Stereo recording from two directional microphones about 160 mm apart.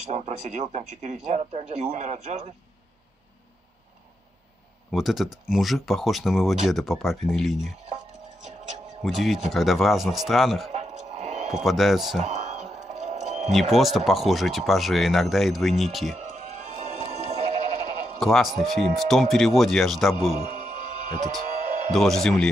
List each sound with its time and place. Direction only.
0.1 s speech: 45° right (ahead or behind)
4.9 s speech: centre (ahead or behind)
9.0 s speech: centre (ahead or behind)
10.7 s music: 45° right (ahead or behind)
11.6 s speech: centre (ahead or behind)
12.2 s a sound: 45° right (ahead or behind)
13.5 s speech: centre (ahead or behind)
16.5 s sheep: 50° right (ahead or behind)
18.2 s speech: centre (ahead or behind)
21.9 s speech: centre (ahead or behind)